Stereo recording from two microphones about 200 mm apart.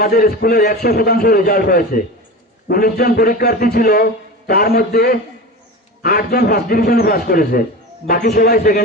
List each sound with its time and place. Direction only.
0.0 s a man's voice: 50° left (ahead or behind)